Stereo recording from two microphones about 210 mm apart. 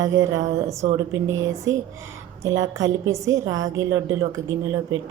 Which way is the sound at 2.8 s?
65° right (ahead or behind).